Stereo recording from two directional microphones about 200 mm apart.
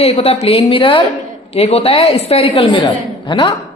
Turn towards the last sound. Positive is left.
turn(degrees=20)  # may be behind; listen again after turning